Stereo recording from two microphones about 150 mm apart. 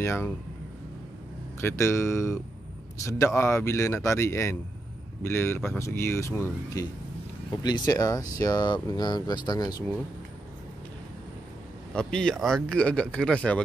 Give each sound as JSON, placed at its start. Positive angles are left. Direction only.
{"t": 0.0, "sound": "speech", "side_deg": 15}
{"t": 1.6, "sound": "speech", "side_deg": 15}
{"t": 11.9, "sound": "speech", "side_deg": 5}